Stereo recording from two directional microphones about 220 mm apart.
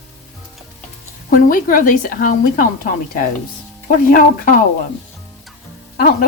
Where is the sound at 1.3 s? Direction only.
40° left (ahead or behind).